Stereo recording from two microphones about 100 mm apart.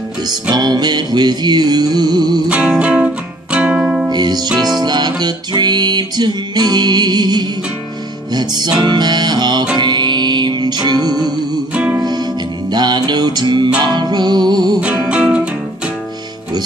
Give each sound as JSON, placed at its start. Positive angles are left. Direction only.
{"t": 0.3, "sound": "music", "side_deg": -45}
{"t": 2.5, "sound": "music", "side_deg": -10}
{"t": 4.1, "sound": "music", "side_deg": -45}
{"t": 11.7, "sound": "music", "side_deg": -15}
{"t": 12.7, "sound": "music", "side_deg": -45}
{"t": 14.8, "sound": "music", "side_deg": -10}